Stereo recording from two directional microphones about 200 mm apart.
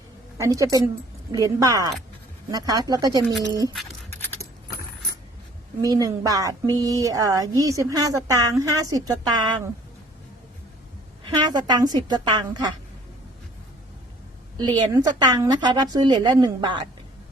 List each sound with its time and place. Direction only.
0.3 s a woman's voice: 15° right (ahead or behind)
5.8 s speech: 20° right (ahead or behind)
11.3 s a woman's voice: 20° right (ahead or behind)
14.6 s a woman's voice: 20° right (ahead or behind)